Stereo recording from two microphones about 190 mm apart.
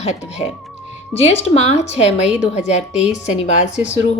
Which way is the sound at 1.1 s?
35° left (ahead or behind).